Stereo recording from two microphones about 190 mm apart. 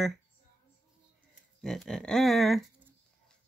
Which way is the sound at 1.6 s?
Centre (ahead or behind).